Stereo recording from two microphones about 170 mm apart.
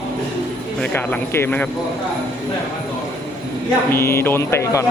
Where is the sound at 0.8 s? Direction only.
10° left (ahead or behind).